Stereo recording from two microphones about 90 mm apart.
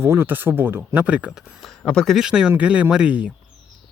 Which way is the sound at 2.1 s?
10° right (ahead or behind).